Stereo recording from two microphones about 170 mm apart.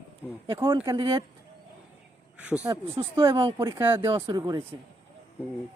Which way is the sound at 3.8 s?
15° right (ahead or behind).